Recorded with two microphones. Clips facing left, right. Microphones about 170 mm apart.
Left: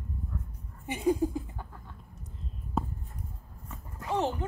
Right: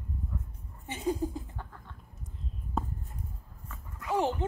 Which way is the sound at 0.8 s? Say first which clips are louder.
Left 4 dB; 15° left (ahead or behind).